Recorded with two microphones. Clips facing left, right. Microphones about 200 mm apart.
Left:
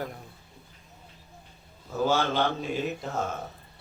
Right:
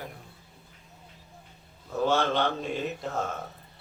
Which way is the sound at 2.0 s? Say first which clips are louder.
Even; centre (ahead or behind).